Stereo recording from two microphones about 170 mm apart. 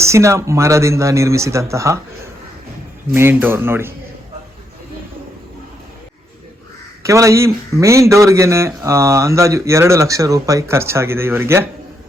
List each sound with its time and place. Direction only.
0.0 s a man's voice: 15° right (ahead or behind)
3.1 s a man's voice: 15° right (ahead or behind)
7.0 s a man's voice: 15° right (ahead or behind)